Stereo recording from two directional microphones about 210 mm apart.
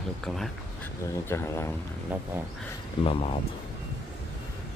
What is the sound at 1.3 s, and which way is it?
Speech, 15° left (ahead or behind).